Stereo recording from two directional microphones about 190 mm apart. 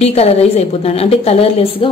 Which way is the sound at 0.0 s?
35° left (ahead or behind).